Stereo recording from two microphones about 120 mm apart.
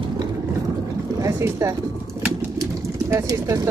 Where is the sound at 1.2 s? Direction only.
25° right (ahead or behind).